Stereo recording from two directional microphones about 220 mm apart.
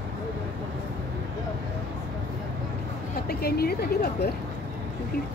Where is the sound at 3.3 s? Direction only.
45° left (ahead or behind).